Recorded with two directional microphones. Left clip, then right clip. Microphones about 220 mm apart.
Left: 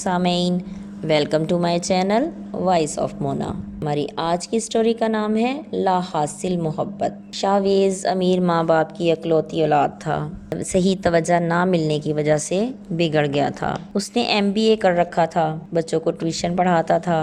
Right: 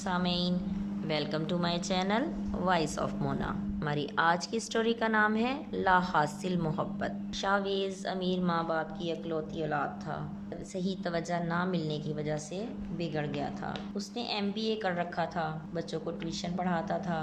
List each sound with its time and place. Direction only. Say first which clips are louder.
0.0 s a woman's voice: left 11 dB; 30° left (ahead or behind)